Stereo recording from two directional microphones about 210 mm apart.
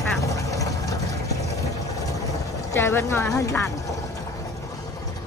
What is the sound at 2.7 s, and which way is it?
Speech, 15° left (ahead or behind).